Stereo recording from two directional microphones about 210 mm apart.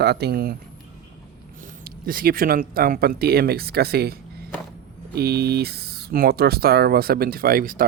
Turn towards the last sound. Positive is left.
turn(degrees=-40)  # may be behind; listen again after turning